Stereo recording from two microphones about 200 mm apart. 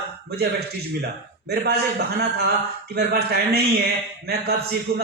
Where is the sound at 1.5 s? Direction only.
55° right (ahead or behind).